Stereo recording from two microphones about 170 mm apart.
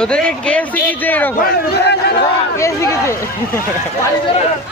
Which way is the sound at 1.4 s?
75° left (ahead or behind).